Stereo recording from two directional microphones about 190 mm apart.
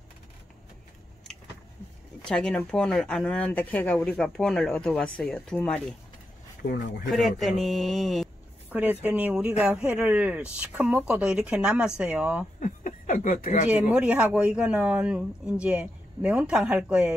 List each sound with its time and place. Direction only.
2.2 s speech: 5° left (ahead or behind)
6.7 s speech: 45° left (ahead or behind)
7.1 s speech: centre (ahead or behind)
12.5 s speech: 40° left (ahead or behind)
13.7 s speech: 5° right (ahead or behind)